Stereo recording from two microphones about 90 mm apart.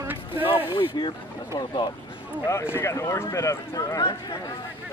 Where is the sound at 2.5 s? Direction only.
30° left (ahead or behind).